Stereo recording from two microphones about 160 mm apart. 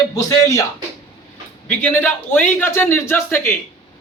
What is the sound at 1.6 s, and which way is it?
A man's voice, 10° left (ahead or behind).